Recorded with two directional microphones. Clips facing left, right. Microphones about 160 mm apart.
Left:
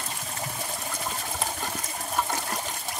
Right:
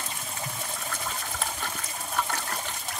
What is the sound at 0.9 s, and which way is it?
Water, 15° left (ahead or behind).